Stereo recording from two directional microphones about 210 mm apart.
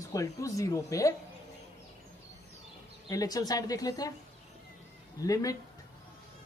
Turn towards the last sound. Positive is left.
turn(degrees=15)  # may be behind; listen again after turning